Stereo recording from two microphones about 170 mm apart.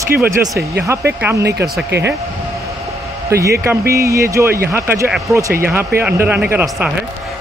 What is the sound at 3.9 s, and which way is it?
Speech, 15° right (ahead or behind).